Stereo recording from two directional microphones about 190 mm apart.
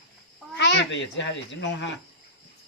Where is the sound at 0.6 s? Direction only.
65° left (ahead or behind).